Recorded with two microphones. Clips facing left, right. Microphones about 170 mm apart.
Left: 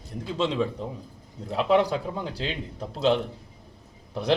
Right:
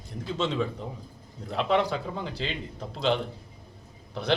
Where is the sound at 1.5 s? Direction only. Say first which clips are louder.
Left 3 dB; 5° left (ahead or behind).